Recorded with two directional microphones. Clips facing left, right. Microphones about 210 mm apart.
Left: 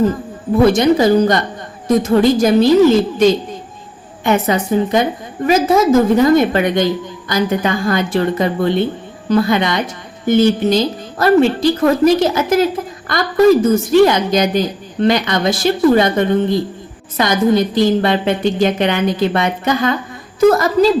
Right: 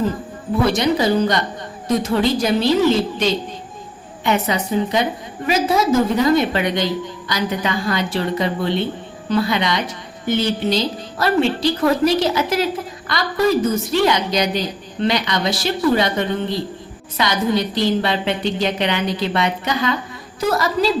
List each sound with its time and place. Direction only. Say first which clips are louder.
0.6 s a woman's voice: left 6 dB; 50° left (ahead or behind)